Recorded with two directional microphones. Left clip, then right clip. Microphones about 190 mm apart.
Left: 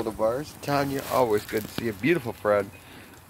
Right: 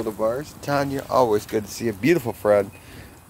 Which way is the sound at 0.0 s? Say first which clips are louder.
Right 2 dB; 30° left (ahead or behind).